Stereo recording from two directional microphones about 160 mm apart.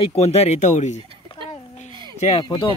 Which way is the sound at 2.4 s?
30° left (ahead or behind).